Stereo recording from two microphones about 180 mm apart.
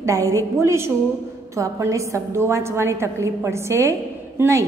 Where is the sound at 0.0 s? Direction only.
20° right (ahead or behind).